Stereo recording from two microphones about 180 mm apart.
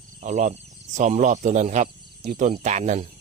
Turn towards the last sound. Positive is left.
turn(degrees=-40)  # may be behind; listen again after turning